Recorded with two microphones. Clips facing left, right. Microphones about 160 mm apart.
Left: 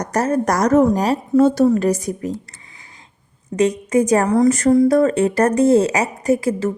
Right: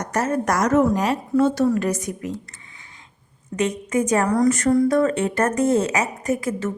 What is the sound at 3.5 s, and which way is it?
A woman's voice, 35° left (ahead or behind).